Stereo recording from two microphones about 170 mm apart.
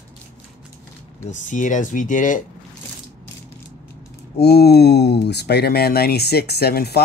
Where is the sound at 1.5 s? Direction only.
50° left (ahead or behind).